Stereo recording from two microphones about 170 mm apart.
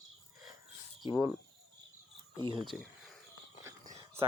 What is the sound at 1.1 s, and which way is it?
Speech, 10° right (ahead or behind).